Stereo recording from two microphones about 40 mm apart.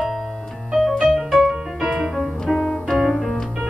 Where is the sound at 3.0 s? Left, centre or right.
Centre.